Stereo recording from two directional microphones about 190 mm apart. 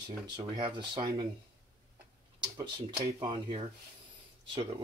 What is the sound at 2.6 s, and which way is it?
Speech, 25° right (ahead or behind).